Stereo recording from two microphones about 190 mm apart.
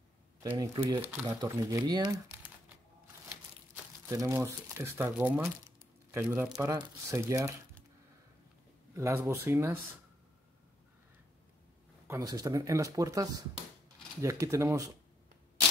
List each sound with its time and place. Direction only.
0.4 s speech: 15° right (ahead or behind)
4.1 s speech: 15° right (ahead or behind)
8.9 s speech: 15° right (ahead or behind)
12.1 s speech: 20° right (ahead or behind)